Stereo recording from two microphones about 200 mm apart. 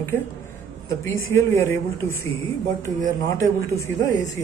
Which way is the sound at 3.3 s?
15° left (ahead or behind).